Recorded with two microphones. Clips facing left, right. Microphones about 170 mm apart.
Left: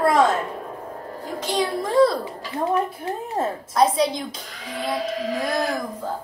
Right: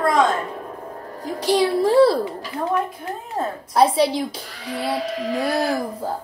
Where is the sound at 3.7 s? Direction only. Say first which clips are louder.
Right 3 dB; 30° right (ahead or behind).